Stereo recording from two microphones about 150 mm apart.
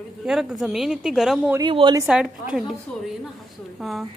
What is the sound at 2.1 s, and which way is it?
Speech, 5° right (ahead or behind).